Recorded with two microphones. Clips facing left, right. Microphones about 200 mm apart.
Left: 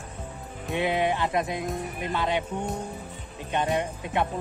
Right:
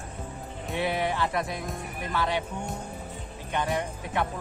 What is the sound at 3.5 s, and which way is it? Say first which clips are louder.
Music: left 3 dB; 20° left (ahead or behind).